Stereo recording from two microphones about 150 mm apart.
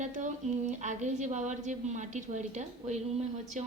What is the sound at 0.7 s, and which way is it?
A woman's voice, 55° right (ahead or behind).